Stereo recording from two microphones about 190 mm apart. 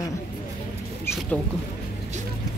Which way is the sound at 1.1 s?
15° left (ahead or behind).